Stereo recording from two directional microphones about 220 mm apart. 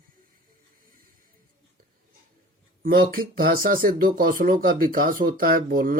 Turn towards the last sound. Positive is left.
turn(degrees=-40)  # may be behind; listen again after turning